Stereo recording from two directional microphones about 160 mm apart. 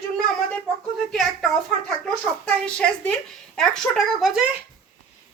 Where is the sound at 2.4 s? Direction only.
5° left (ahead or behind).